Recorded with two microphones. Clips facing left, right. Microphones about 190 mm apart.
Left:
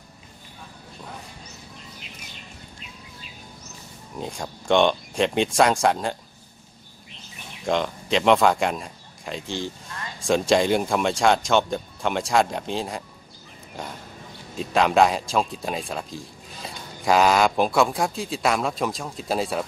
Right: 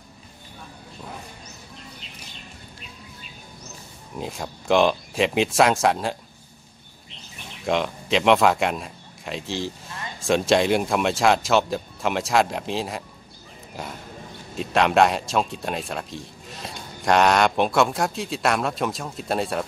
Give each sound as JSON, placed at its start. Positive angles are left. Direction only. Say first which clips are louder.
{"t": 4.2, "sound": "speech", "louder": "right 1 dB", "side_deg": -5}
{"t": 7.6, "sound": "speech", "louder": "even", "side_deg": 0}